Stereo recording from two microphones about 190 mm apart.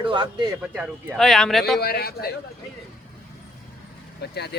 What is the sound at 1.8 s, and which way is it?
Speech, 55° left (ahead or behind).